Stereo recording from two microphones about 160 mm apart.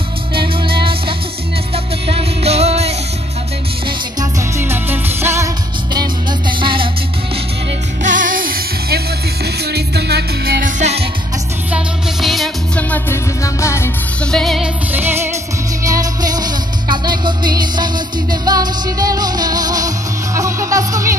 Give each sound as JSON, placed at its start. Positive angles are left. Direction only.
{"t": 0.3, "sound": "music", "side_deg": -30}
{"t": 4.2, "sound": "music", "side_deg": -15}
{"t": 6.6, "sound": "music", "side_deg": -30}
{"t": 8.0, "sound": "music", "side_deg": -55}
{"t": 9.7, "sound": "music", "side_deg": -90}
{"t": 11.7, "sound": "music", "side_deg": 0}
{"t": 12.9, "sound": "music", "side_deg": 15}
{"t": 14.2, "sound": "music", "side_deg": 5}
{"t": 14.9, "sound": "music", "side_deg": -10}